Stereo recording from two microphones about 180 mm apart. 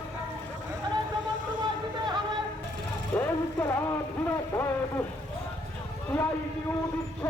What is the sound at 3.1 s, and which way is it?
Vehicle, 15° left (ahead or behind).